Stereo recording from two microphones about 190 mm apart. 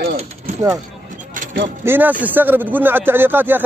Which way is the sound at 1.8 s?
10° right (ahead or behind).